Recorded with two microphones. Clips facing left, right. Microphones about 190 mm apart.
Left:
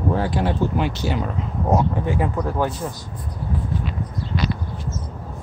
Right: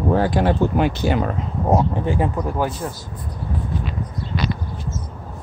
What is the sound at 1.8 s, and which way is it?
Speech, 30° right (ahead or behind).